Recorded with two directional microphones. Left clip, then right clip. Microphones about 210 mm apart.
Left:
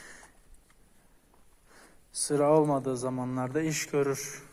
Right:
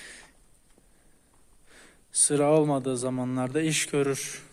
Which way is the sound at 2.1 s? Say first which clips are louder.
Right 1 dB; 30° right (ahead or behind).